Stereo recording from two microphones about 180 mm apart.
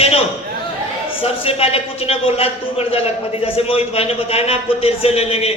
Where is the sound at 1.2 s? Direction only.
35° left (ahead or behind).